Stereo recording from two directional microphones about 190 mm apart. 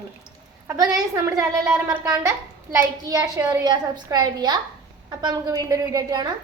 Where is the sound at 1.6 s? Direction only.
20° right (ahead or behind).